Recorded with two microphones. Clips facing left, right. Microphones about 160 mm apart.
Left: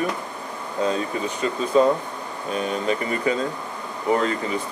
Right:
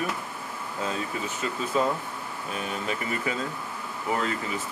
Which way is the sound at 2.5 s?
30° left (ahead or behind).